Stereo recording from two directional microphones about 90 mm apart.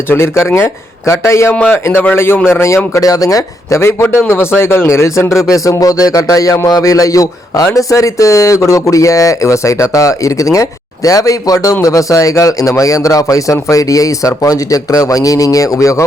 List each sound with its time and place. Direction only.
0.1 s a man's voice: 30° left (ahead or behind)